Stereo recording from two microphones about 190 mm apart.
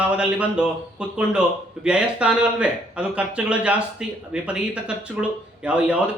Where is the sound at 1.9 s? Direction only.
5° right (ahead or behind).